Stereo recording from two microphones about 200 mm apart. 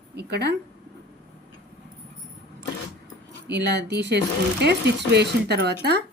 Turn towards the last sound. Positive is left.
turn(degrees=-55)  # may be behind; listen again after turning